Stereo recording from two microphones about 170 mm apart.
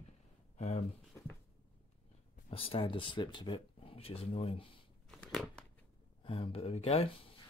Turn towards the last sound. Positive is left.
turn(degrees=35)  # may be behind; listen again after turning